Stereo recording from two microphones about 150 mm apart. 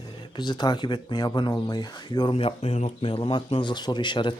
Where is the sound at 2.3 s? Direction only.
40° left (ahead or behind).